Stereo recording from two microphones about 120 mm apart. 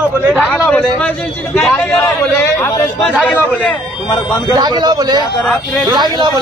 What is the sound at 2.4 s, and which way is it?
A man's voice, 20° left (ahead or behind).